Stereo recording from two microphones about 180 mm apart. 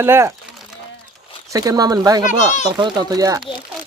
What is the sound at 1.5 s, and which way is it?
Speech, 20° right (ahead or behind).